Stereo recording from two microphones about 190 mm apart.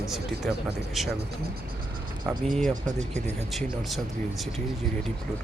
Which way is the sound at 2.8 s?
40° right (ahead or behind).